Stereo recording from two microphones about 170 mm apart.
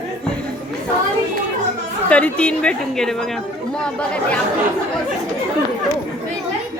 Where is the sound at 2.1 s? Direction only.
5° left (ahead or behind).